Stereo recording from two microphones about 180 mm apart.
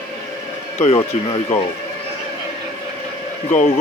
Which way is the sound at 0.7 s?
35° left (ahead or behind).